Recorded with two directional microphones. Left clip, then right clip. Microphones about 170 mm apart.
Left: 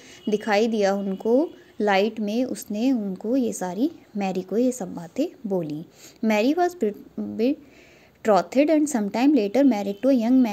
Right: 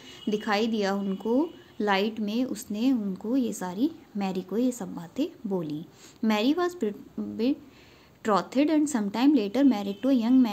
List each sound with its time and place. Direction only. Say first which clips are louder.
0.3 s a woman's voice: left 5 dB; 25° left (ahead or behind)
8.2 s a woman's voice: left 6 dB; 25° left (ahead or behind)